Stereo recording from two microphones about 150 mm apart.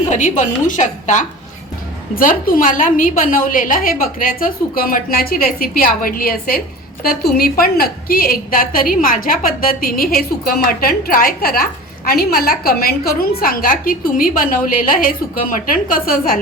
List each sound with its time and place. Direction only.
0.1 s a woman's voice: 55° left (ahead or behind); by 16.4 s 75° left (ahead or behind)